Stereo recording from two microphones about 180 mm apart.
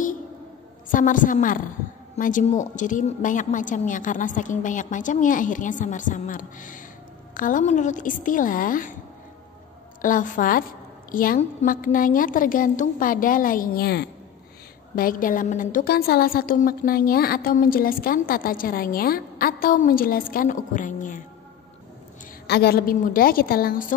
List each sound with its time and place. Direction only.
0.8 s a woman's voice: 45° left (ahead or behind)
10.0 s a woman's voice: 45° left (ahead or behind)
22.5 s a woman's voice: 60° left (ahead or behind)